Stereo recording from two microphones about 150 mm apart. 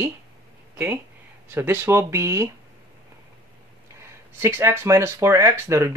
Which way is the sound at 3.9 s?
15° right (ahead or behind).